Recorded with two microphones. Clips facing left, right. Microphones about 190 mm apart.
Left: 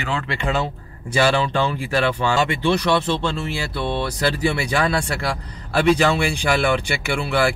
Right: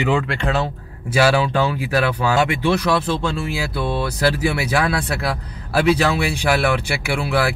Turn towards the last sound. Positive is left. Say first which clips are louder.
# even
turn(degrees=-5)  # may be behind; listen again after turning